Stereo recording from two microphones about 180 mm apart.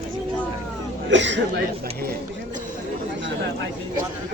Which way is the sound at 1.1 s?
80° right.